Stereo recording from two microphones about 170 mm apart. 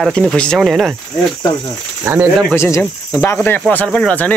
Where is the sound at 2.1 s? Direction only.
15° right (ahead or behind).